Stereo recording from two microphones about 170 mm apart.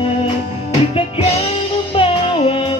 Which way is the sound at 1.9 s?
30° left (ahead or behind).